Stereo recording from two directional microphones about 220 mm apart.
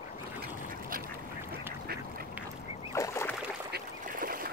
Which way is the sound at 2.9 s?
15° left (ahead or behind).